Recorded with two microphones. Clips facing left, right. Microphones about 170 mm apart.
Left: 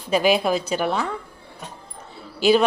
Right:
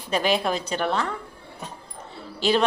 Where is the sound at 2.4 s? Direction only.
10° left (ahead or behind).